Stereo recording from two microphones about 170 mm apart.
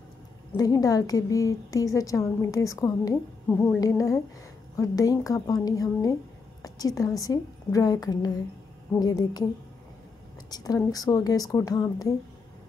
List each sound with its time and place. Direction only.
0.5 s a woman's voice: 20° left (ahead or behind)
3.4 s a sound: 10° left (ahead or behind)
3.8 s a woman's voice: 20° left (ahead or behind)
10.5 s a woman's voice: 20° left (ahead or behind)